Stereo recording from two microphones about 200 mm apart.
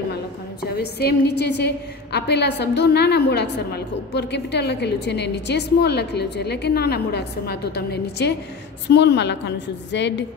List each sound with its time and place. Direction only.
0.1 s a woman's voice: 55° left (ahead or behind)